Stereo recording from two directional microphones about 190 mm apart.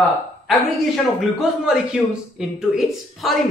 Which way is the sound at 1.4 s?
5° right (ahead or behind).